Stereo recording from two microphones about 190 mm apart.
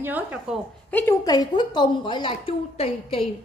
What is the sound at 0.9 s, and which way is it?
Speech, 10° left (ahead or behind).